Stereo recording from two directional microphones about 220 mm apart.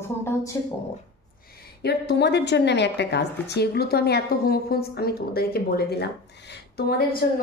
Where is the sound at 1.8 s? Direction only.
50° left (ahead or behind).